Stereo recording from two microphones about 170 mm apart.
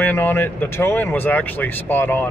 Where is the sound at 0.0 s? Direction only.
10° left (ahead or behind).